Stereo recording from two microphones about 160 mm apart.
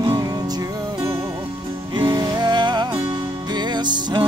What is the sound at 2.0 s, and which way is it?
Music, 25° right (ahead or behind).